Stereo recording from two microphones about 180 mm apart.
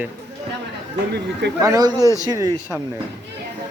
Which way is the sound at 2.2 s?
20° right (ahead or behind).